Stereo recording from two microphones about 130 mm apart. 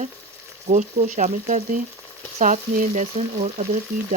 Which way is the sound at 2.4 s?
85° right.